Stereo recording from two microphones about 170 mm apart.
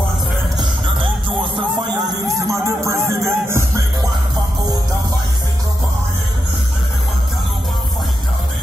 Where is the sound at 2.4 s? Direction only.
15° right (ahead or behind).